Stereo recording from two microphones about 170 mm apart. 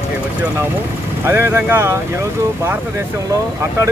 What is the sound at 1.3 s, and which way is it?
Speech, 10° right (ahead or behind).